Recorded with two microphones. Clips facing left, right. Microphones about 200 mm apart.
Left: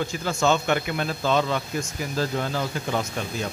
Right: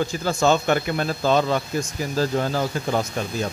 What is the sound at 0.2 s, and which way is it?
Speech, 35° right (ahead or behind).